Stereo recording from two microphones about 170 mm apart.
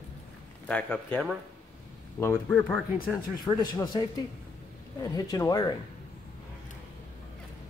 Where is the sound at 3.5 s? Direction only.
25° left (ahead or behind).